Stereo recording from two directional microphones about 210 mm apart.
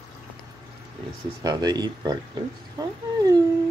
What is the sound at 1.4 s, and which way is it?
Speech, 20° right (ahead or behind).